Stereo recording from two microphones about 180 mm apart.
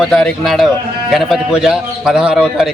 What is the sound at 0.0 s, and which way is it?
A man's voice, centre (ahead or behind).